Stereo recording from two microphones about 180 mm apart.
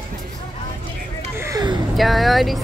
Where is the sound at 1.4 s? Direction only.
20° right (ahead or behind).